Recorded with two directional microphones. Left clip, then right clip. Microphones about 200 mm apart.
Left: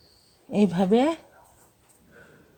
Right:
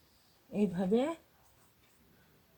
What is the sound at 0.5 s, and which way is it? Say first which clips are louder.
Speech: left 10 dB; 50° left (ahead or behind).